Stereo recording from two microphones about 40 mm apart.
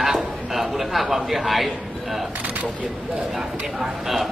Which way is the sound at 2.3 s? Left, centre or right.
Right.